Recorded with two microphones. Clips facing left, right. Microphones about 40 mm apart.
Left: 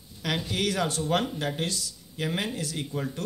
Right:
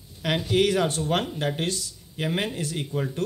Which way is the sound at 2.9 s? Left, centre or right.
Right.